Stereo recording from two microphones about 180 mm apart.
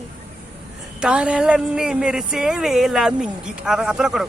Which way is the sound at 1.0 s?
5° right (ahead or behind).